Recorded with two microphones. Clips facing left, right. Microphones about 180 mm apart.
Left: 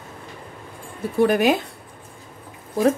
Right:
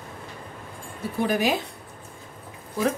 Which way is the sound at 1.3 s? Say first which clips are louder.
Left 3 dB; 65° left (ahead or behind).